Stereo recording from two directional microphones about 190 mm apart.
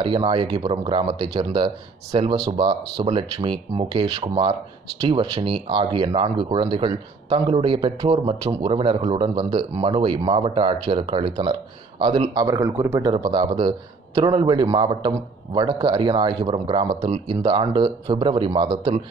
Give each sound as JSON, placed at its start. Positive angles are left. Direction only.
{"t": 0.0, "sound": "speech", "side_deg": -25}